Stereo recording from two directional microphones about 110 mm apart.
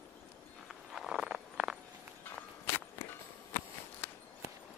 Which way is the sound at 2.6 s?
20° left (ahead or behind).